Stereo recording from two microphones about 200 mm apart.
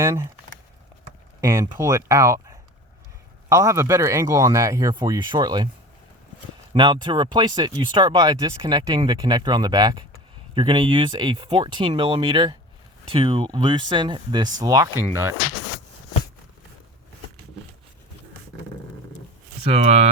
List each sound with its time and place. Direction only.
0.0 s speech: 15° right (ahead or behind)
1.4 s speech: 15° right (ahead or behind)
6.7 s speech: 25° right (ahead or behind)
19.6 s speech: 30° right (ahead or behind)